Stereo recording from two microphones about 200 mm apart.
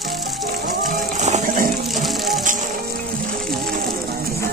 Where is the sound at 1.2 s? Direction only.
40° right (ahead or behind).